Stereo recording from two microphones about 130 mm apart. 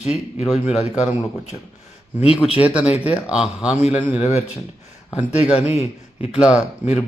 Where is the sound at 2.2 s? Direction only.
45° left (ahead or behind).